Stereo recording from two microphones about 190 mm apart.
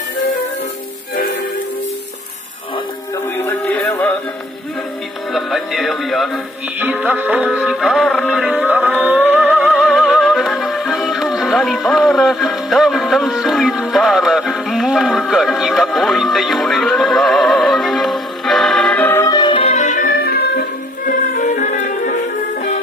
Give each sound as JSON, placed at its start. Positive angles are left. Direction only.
{"t": 3.3, "sound": "music", "side_deg": 15}
{"t": 5.3, "sound": "music", "side_deg": 0}